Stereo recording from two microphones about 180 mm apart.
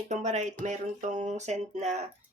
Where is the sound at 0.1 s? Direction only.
40° right (ahead or behind).